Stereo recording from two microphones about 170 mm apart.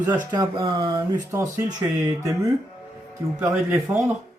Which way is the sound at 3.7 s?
Centre (ahead or behind).